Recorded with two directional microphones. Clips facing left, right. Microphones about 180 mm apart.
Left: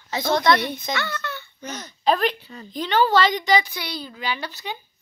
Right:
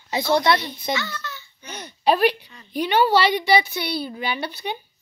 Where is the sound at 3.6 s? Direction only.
25° right (ahead or behind).